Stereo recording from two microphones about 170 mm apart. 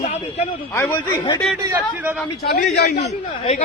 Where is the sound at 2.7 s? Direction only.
75° left (ahead or behind).